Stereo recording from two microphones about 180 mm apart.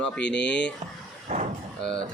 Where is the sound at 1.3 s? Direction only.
40° right (ahead or behind).